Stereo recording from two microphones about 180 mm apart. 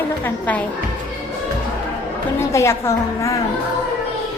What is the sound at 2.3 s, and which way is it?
A woman's voice, 15° left (ahead or behind).